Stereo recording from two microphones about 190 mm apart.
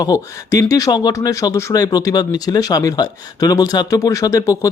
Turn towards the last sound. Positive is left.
turn(degrees=15)  # may be behind; listen again after turning